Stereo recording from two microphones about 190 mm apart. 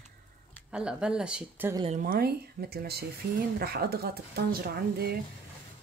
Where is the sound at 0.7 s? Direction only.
5° right (ahead or behind).